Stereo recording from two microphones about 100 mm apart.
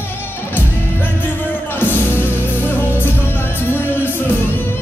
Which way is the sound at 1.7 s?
20° left (ahead or behind).